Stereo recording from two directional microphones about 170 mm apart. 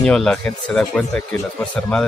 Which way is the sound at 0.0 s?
5° left (ahead or behind).